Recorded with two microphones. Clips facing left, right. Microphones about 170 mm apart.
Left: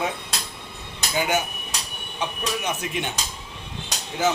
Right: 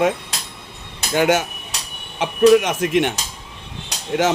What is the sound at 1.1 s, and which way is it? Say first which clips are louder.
Speech: right 7 dB; 85° right.